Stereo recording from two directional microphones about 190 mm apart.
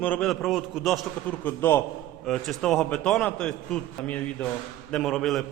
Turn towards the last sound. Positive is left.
turn(degrees=0)  # may be behind; listen again after turning